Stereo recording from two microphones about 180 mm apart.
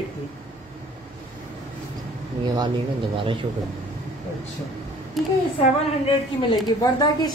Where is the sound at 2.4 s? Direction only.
25° right (ahead or behind).